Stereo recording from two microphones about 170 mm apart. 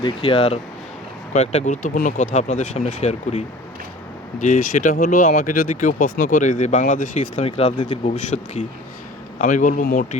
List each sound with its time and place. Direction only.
0.0 s speech: 35° left (ahead or behind); by 10.2 s 55° left (ahead or behind)